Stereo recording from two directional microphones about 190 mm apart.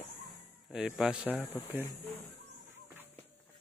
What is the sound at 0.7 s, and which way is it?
Speech, 5° right (ahead or behind).